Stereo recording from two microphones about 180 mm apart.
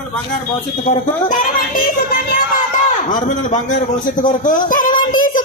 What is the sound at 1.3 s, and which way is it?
Speech, 50° left (ahead or behind).